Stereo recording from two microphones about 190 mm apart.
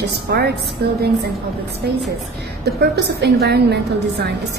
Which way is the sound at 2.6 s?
60° right (ahead or behind).